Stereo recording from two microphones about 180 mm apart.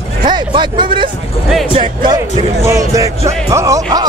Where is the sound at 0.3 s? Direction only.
25° right (ahead or behind).